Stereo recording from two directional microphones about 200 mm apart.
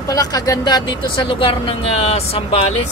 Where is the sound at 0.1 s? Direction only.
20° left (ahead or behind).